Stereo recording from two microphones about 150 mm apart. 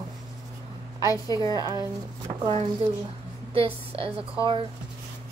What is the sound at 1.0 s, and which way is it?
Speech, 25° left (ahead or behind).